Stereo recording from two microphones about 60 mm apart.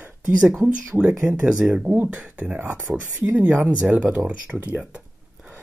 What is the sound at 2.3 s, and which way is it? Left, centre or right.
Speech, right.